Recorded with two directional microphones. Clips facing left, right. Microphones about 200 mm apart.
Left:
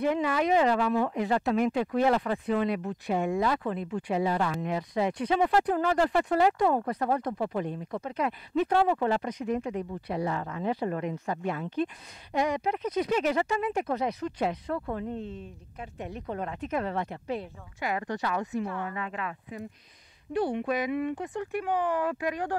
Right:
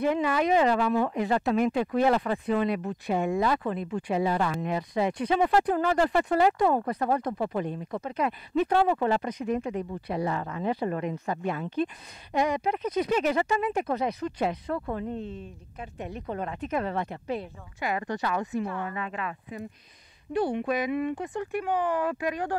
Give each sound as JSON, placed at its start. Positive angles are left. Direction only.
{"t": 0.0, "sound": "speech", "side_deg": -10}
{"t": 20.6, "sound": "speech", "side_deg": -15}